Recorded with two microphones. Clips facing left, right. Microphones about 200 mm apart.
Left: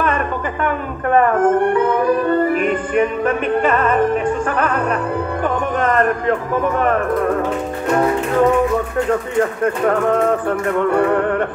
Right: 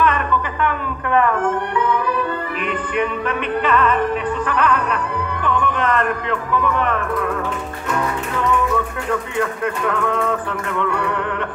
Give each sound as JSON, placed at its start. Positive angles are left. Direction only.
{"t": 0.7, "sound": "music", "side_deg": 45}
{"t": 6.5, "sound": "speech", "side_deg": 45}
{"t": 7.9, "sound": "music", "side_deg": 40}
{"t": 9.4, "sound": "speech", "side_deg": 40}